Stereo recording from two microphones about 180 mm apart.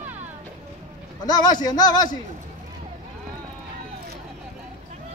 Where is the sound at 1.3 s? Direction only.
20° left (ahead or behind).